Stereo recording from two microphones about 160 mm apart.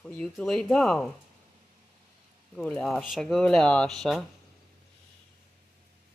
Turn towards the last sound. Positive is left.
turn(degrees=0)  # may be behind; listen again after turning